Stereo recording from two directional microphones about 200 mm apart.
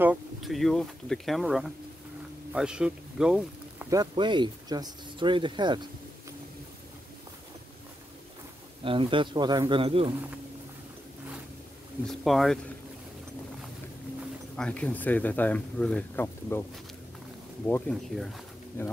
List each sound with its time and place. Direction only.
0.0 s speech: 5° right (ahead or behind)
3.9 s speech: 20° right (ahead or behind)
8.8 s speech: 25° right (ahead or behind)
12.1 s speech: centre (ahead or behind)
14.6 s speech: 5° left (ahead or behind)
17.6 s speech: 5° left (ahead or behind)